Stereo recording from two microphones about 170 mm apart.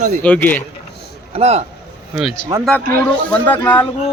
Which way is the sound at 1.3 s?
35° right (ahead or behind).